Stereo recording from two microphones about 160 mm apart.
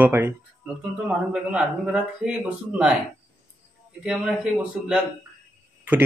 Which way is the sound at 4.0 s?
5° right (ahead or behind).